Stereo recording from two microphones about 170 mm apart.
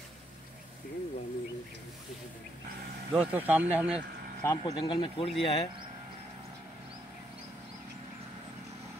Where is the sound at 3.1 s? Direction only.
10° right (ahead or behind).